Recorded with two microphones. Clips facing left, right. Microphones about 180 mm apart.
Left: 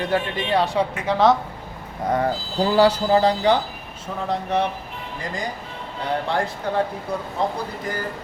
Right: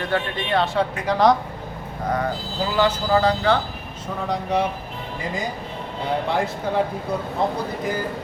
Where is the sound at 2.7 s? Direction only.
35° left (ahead or behind); by 3.5 s 20° left (ahead or behind).